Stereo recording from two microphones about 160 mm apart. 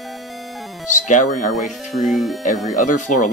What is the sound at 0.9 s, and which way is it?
Speech, 50° left (ahead or behind).